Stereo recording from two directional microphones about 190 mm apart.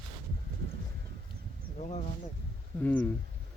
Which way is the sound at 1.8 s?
35° left (ahead or behind).